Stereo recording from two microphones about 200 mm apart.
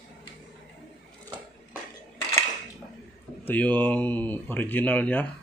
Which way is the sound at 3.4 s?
10° left (ahead or behind).